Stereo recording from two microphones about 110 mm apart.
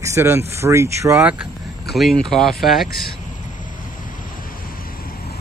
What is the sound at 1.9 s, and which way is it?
Speech, centre (ahead or behind).